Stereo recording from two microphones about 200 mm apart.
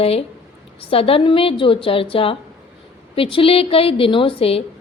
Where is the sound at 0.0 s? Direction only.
30° left (ahead or behind).